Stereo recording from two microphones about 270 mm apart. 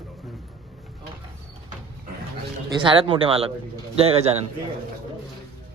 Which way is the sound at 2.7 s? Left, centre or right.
Centre.